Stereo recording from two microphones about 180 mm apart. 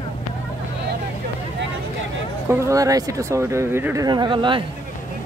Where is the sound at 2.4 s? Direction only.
15° right (ahead or behind).